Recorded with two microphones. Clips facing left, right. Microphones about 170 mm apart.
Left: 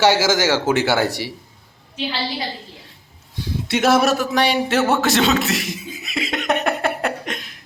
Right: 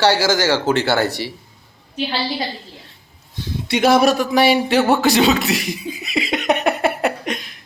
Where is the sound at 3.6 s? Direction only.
Centre (ahead or behind).